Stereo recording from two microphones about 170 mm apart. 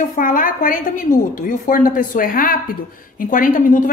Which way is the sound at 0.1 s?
50° left (ahead or behind).